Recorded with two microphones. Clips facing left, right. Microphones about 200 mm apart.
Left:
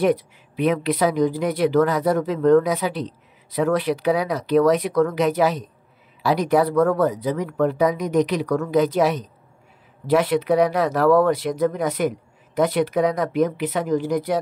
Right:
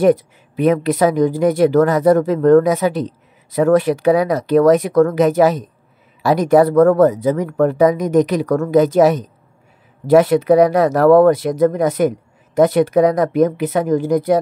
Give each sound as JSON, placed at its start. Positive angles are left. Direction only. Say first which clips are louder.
{"t": 0.0, "sound": "speech", "louder": "right 6 dB", "side_deg": -45}